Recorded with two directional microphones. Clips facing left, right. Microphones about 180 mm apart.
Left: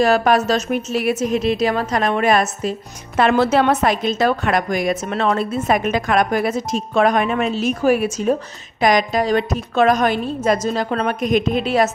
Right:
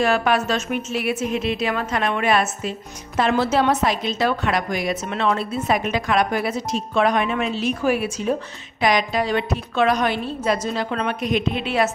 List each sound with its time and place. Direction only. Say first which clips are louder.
0.0 s a woman's voice: left 4 dB; 40° left (ahead or behind)
3.2 s a woman's voice: left 4 dB; 60° left (ahead or behind); by 11.9 s 40° left (ahead or behind)